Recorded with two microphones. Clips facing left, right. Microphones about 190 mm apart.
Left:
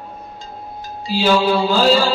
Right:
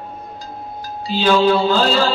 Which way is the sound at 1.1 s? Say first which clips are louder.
Right 1 dB; 10° left (ahead or behind).